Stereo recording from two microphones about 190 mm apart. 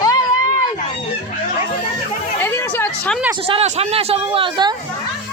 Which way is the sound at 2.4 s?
10° left (ahead or behind).